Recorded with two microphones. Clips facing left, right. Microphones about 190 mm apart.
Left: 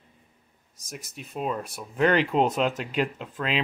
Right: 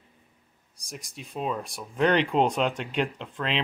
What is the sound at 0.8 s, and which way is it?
Speech, 5° left (ahead or behind).